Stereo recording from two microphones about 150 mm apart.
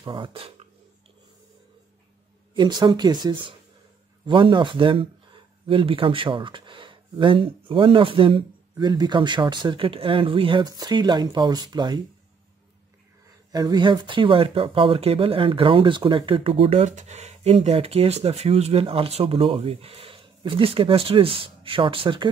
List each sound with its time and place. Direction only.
0.0 s speech: 30° right (ahead or behind)
2.5 s speech: 30° right (ahead or behind)
13.5 s speech: 25° right (ahead or behind)